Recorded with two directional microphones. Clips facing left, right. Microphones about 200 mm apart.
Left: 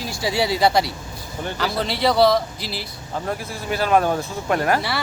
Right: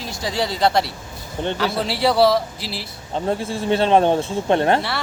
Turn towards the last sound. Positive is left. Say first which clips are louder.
# right 3 dB
turn(degrees=-25)  # may be behind; listen again after turning